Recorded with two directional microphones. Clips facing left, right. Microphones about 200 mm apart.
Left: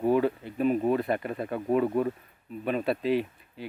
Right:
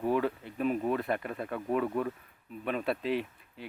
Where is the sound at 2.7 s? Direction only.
Centre (ahead or behind).